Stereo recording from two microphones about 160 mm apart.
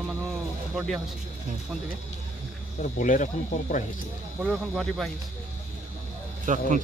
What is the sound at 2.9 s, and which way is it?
Speech, 55° left (ahead or behind).